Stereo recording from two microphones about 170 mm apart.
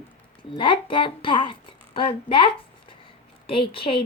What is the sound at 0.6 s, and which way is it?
A woman's voice, 30° left (ahead or behind).